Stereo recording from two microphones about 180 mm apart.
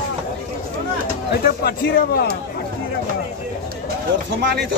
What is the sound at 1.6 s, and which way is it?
Speech, 60° left (ahead or behind).